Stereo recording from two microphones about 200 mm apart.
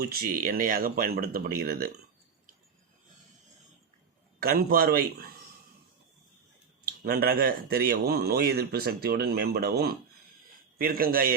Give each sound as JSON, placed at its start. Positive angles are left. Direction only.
{"t": 0.0, "sound": "speech", "side_deg": -50}
{"t": 4.4, "sound": "speech", "side_deg": -45}
{"t": 6.8, "sound": "speech", "side_deg": -50}